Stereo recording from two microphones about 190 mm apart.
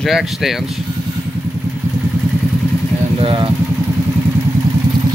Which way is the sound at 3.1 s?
25° right (ahead or behind).